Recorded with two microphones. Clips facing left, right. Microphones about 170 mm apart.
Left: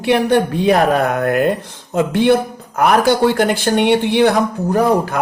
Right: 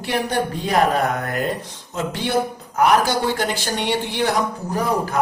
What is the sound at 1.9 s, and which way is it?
A woman's voice, 55° left (ahead or behind).